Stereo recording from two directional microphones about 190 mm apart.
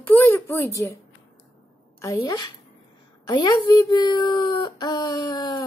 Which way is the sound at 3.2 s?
20° left (ahead or behind).